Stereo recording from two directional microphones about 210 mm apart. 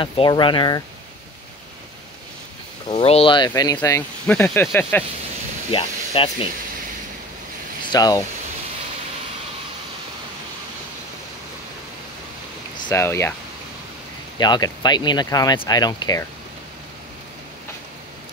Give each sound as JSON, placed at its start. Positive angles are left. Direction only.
{"t": 0.0, "sound": "speech", "side_deg": 25}
{"t": 2.9, "sound": "speech", "side_deg": 30}
{"t": 5.7, "sound": "speech", "side_deg": 25}
{"t": 7.9, "sound": "speech", "side_deg": 15}
{"t": 12.8, "sound": "speech", "side_deg": 15}
{"t": 14.4, "sound": "speech", "side_deg": 20}